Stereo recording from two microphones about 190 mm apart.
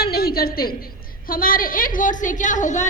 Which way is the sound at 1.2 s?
50° left (ahead or behind).